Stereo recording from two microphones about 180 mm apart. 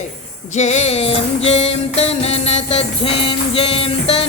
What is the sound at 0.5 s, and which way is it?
Music, 40° left (ahead or behind).